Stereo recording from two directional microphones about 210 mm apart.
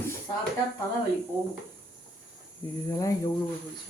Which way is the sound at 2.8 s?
15° left (ahead or behind).